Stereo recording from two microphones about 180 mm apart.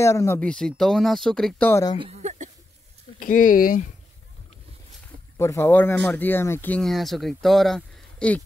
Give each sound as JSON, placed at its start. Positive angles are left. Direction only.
{"t": 0.0, "sound": "speech", "side_deg": 15}
{"t": 2.0, "sound": "a sound", "side_deg": -35}
{"t": 3.2, "sound": "speech", "side_deg": 50}
{"t": 5.4, "sound": "speech", "side_deg": 15}